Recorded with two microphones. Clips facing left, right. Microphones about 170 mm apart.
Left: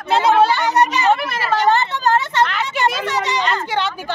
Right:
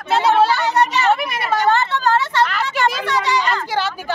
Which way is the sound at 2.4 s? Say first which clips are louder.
Even; centre (ahead or behind).